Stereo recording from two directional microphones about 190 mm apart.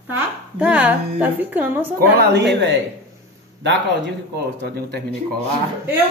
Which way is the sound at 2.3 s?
65° right (ahead or behind).